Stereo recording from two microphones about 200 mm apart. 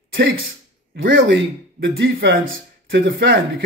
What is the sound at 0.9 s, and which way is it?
Speech, 65° right (ahead or behind).